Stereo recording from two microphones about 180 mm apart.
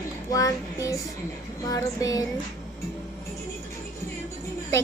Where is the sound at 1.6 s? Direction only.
20° left (ahead or behind).